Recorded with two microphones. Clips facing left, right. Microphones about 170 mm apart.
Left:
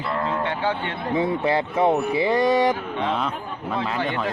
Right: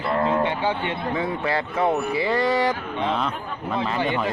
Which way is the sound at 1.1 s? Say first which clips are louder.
Left 6 dB; 20° left (ahead or behind).